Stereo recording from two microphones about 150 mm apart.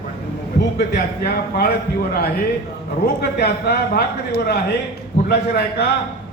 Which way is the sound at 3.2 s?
90° left.